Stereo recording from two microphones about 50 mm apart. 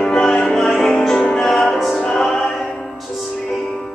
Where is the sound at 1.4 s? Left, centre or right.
Centre.